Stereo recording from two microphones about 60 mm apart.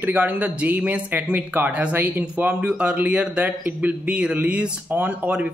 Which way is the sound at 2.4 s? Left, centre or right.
Right.